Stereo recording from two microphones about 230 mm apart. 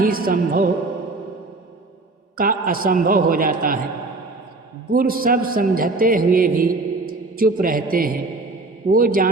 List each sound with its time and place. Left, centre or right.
0.0 s a man's voice: right
2.4 s a man's voice: right
4.9 s a man's voice: right